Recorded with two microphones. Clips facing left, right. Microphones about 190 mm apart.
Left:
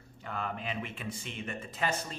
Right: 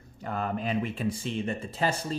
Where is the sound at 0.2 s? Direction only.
40° right (ahead or behind).